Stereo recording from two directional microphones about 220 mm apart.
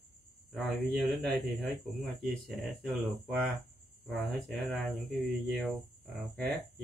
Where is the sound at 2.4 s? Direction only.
Centre (ahead or behind).